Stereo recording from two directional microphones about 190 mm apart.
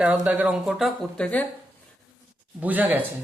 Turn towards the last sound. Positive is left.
turn(degrees=-10)  # may be behind; listen again after turning